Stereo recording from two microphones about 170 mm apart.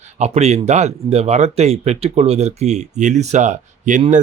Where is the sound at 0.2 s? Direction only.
40° right (ahead or behind).